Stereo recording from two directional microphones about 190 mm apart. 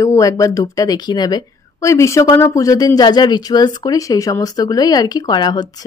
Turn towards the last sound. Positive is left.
turn(degrees=20)  # may be behind; listen again after turning